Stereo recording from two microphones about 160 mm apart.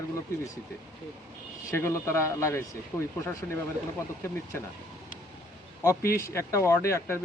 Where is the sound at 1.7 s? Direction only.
15° left (ahead or behind).